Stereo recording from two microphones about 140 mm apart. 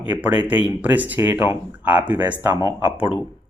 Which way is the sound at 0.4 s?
10° right (ahead or behind).